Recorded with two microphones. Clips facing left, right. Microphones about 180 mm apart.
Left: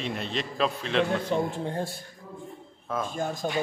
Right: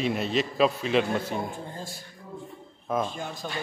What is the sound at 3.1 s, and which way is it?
Speech, 45° left (ahead or behind).